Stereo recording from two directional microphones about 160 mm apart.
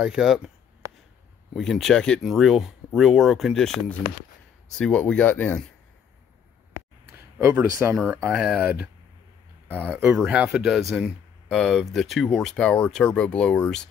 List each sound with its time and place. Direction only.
0.0 s speech: 5° right (ahead or behind)
1.5 s speech: centre (ahead or behind)
7.3 s speech: 15° right (ahead or behind); by 13.8 s 5° left (ahead or behind)